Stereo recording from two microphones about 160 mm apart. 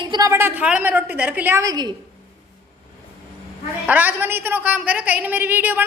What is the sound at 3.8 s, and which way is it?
A woman's voice, 10° right (ahead or behind).